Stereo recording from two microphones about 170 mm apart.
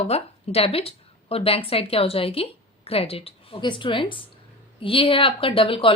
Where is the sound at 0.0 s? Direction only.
35° left (ahead or behind).